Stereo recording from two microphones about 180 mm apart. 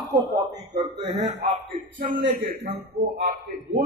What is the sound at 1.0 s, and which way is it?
A man's voice, 40° right (ahead or behind).